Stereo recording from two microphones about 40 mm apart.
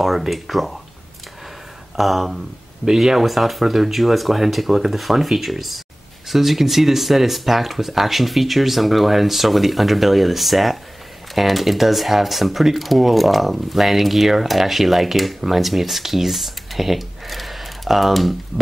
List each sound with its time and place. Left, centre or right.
0.0 s speech: centre
2.0 s speech: centre
18.5 s speech: centre